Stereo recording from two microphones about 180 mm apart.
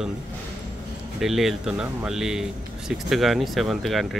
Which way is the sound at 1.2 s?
Centre (ahead or behind).